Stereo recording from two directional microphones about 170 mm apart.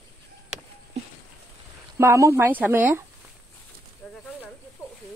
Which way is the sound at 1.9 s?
15° right (ahead or behind).